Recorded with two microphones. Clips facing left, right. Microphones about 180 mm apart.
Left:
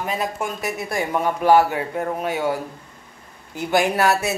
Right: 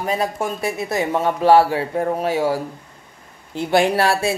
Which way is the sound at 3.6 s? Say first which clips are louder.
Right 3 dB; 25° right (ahead or behind).